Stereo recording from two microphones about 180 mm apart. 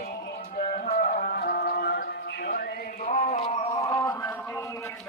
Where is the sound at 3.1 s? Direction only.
40° left (ahead or behind).